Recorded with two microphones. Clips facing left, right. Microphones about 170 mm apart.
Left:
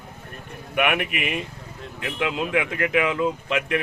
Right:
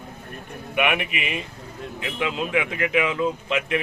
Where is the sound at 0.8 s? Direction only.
20° right (ahead or behind).